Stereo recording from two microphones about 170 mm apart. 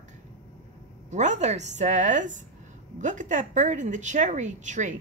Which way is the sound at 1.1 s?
45° right (ahead or behind).